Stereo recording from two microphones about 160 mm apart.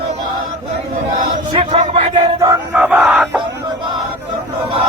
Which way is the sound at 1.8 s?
35° right (ahead or behind).